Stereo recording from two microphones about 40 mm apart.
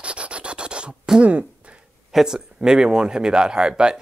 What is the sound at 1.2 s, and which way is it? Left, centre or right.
Speech, right.